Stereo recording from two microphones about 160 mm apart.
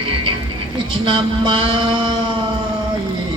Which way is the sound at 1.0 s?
30° right (ahead or behind).